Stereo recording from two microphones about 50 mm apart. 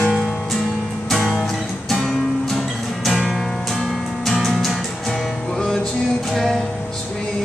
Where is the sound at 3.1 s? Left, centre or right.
Centre.